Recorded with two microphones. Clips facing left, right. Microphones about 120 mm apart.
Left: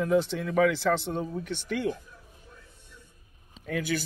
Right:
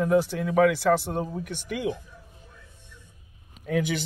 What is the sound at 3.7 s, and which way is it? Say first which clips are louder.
Speech: right 3 dB; 20° right (ahead or behind).